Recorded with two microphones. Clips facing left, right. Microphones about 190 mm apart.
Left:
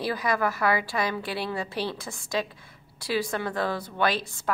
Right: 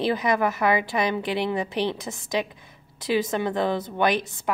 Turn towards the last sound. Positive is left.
turn(degrees=-20)  # may be behind; listen again after turning